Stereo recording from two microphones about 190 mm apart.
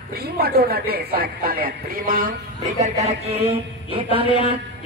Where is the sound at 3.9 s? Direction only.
30° right (ahead or behind).